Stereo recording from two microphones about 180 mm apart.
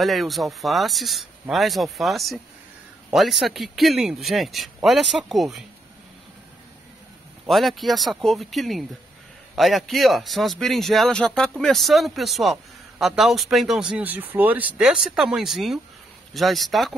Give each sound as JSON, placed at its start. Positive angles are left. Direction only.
{"t": 0.0, "sound": "a man's voice", "side_deg": 0}
{"t": 7.4, "sound": "a man's voice", "side_deg": 0}